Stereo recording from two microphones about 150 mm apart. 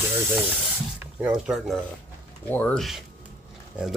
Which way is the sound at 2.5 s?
10° left (ahead or behind).